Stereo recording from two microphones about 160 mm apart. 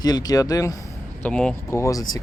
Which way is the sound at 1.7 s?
20° left (ahead or behind).